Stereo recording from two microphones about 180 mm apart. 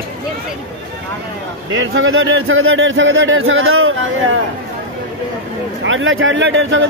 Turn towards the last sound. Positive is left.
turn(degrees=-90)